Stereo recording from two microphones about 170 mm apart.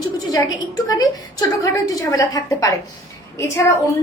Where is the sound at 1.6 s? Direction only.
20° left (ahead or behind).